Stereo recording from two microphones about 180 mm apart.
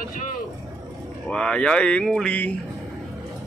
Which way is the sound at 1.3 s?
5° left (ahead or behind).